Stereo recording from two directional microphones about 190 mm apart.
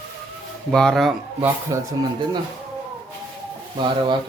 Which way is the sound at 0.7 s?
Centre (ahead or behind).